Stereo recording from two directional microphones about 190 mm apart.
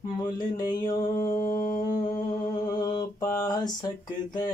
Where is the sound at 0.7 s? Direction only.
20° left (ahead or behind).